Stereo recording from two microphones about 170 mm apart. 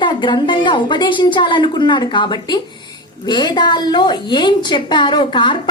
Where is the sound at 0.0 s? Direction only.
25° left (ahead or behind).